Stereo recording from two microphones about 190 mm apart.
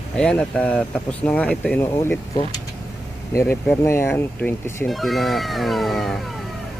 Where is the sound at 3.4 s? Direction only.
5° left (ahead or behind).